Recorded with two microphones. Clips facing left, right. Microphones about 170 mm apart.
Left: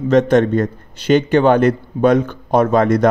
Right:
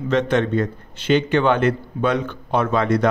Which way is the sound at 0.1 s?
45° left (ahead or behind).